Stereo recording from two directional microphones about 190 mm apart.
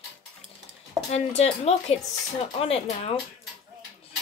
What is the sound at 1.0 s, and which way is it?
Speech, 35° left (ahead or behind).